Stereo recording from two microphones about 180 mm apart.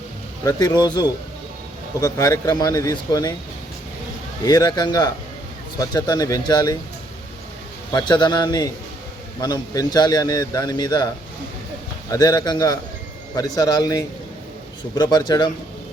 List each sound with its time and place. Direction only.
0.4 s a man's voice: 20° left (ahead or behind)
4.4 s a man's voice: 20° left (ahead or behind)
7.9 s a man's voice: 25° left (ahead or behind)
12.1 s a man's voice: 20° left (ahead or behind)